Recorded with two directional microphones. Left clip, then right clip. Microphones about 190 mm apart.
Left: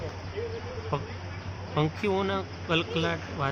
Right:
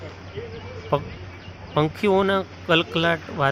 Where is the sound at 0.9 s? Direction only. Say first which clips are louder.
Right 11 dB; 30° right (ahead or behind).